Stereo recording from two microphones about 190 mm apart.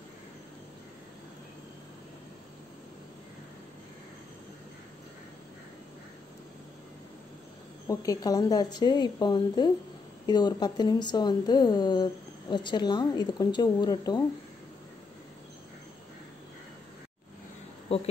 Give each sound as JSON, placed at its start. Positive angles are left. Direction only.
{"t": 7.9, "sound": "a woman's voice", "side_deg": 20}